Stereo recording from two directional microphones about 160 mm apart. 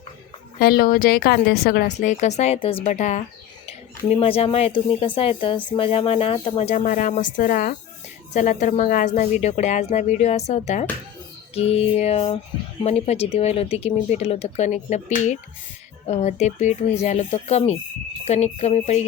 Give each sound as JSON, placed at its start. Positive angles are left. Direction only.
{"t": 0.6, "sound": "speech", "side_deg": 70}
{"t": 2.0, "sound": "speech", "side_deg": 45}
{"t": 4.2, "sound": "a woman's voice", "side_deg": 40}
{"t": 9.3, "sound": "a woman's voice", "side_deg": 45}